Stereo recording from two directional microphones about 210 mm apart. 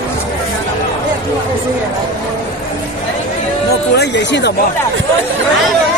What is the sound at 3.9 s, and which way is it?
Music, 55° left (ahead or behind).